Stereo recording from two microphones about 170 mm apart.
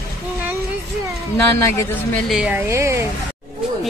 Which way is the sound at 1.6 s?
15° left (ahead or behind).